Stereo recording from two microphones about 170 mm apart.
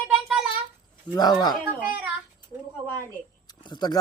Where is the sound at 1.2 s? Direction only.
25° left (ahead or behind).